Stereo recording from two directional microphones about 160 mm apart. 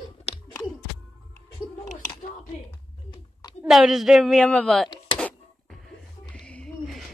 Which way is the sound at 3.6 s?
Centre (ahead or behind).